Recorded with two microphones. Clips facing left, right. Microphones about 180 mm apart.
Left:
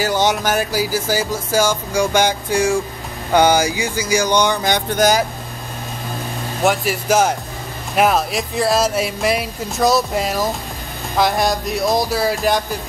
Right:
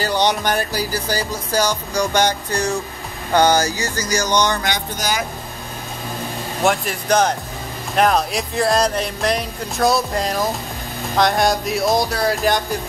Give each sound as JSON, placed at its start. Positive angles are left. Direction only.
{"t": 0.0, "sound": "music", "side_deg": 5}
{"t": 4.7, "sound": "speech", "side_deg": 55}
{"t": 6.6, "sound": "speech", "side_deg": 0}